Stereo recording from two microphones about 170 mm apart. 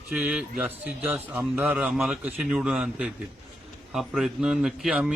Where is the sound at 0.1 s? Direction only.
5° right (ahead or behind).